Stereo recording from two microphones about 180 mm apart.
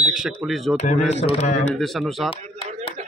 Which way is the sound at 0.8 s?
40° left (ahead or behind).